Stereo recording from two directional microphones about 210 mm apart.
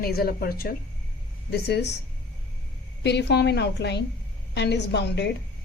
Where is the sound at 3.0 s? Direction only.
55° left (ahead or behind).